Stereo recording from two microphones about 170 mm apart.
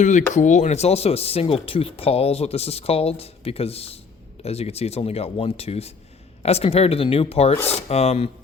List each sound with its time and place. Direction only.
0.0 s speech: 45° left (ahead or behind)